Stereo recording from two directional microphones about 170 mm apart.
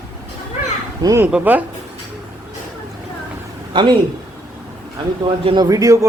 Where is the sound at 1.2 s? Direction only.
10° right (ahead or behind).